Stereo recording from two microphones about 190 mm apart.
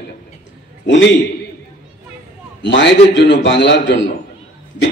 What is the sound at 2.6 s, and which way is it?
A man's voice, 70° left (ahead or behind).